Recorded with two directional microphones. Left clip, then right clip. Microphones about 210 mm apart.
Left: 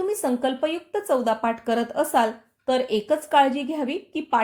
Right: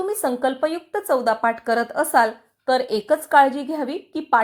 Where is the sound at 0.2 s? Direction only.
15° right (ahead or behind).